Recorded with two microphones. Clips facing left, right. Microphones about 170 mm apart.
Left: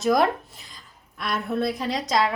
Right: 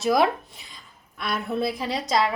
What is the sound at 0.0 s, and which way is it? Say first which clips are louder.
A woman's voice: even; centre (ahead or behind).